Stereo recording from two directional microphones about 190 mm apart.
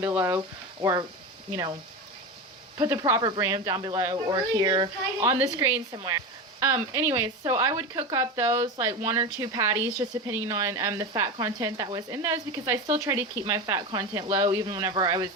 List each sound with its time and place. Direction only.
0.0 s speech: 10° right (ahead or behind)
2.7 s speech: 25° right (ahead or behind)